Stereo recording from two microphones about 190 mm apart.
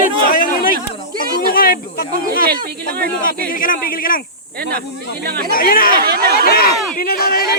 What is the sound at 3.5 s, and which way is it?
Speech, 45° left (ahead or behind).